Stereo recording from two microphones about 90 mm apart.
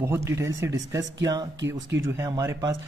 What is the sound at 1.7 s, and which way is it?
Speech, 30° right (ahead or behind).